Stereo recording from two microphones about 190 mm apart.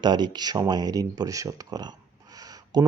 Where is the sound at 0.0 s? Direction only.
25° right (ahead or behind).